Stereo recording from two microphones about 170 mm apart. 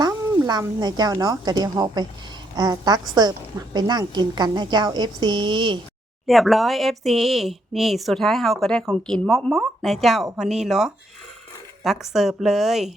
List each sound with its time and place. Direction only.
0.0 s a woman's voice: 25° right (ahead or behind)
6.2 s speech: centre (ahead or behind)